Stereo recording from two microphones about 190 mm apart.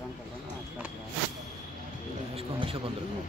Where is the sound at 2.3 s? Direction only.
30° right (ahead or behind).